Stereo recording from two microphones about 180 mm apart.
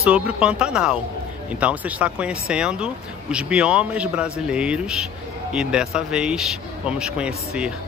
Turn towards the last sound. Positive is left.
turn(degrees=-5)  # may be behind; listen again after turning